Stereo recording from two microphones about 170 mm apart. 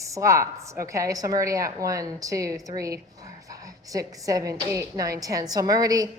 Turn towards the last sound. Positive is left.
turn(degrees=-20)  # may be behind; listen again after turning